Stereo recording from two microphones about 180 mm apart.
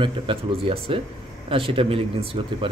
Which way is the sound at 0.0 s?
30° right (ahead or behind).